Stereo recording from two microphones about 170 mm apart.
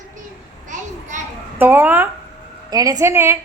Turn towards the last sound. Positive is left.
turn(degrees=-15)  # may be behind; listen again after turning